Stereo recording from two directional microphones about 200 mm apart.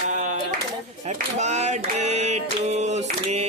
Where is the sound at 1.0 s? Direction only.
35° right (ahead or behind).